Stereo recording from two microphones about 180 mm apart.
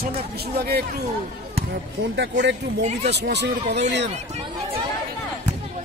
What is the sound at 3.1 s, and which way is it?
Speech, 70° right (ahead or behind).